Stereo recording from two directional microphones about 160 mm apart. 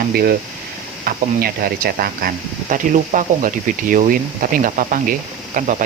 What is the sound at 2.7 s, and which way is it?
Speech, 55° right (ahead or behind).